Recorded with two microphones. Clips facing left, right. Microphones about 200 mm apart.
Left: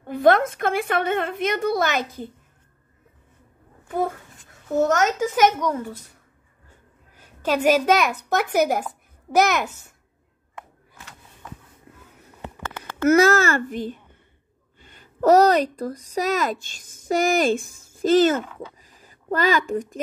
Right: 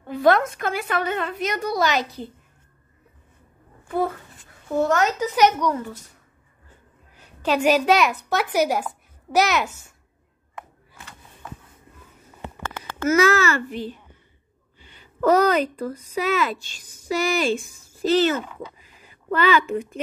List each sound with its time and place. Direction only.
0.0 s a sound: 50° left (ahead or behind)
0.6 s a woman's voice: 55° left (ahead or behind)
4.7 s a woman's voice: 45° left (ahead or behind)
7.2 s a child's voice: 45° left (ahead or behind)
13.0 s a woman's voice: 50° left (ahead or behind)
18.8 s a sound: 40° left (ahead or behind)